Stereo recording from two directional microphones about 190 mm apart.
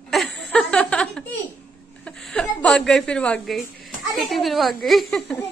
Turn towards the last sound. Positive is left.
turn(degrees=0)  # may be behind; listen again after turning